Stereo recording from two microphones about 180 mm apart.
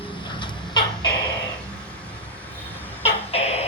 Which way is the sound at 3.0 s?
35° left (ahead or behind).